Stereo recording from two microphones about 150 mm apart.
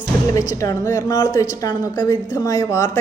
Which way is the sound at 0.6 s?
20° left (ahead or behind).